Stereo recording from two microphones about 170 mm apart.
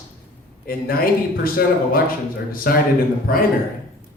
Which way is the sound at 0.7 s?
60° left (ahead or behind).